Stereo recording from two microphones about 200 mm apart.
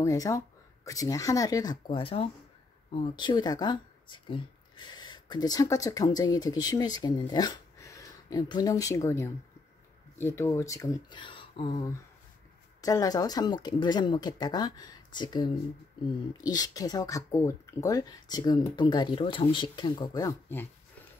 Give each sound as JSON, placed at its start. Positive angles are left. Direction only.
{"t": 0.0, "sound": "speech", "side_deg": 15}